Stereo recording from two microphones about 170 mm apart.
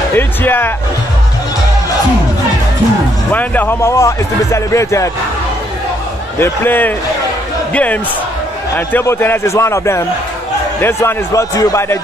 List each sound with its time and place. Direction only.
0.1 s speech: 10° left (ahead or behind)
3.3 s speech: 10° left (ahead or behind)
6.4 s speech: 10° left (ahead or behind)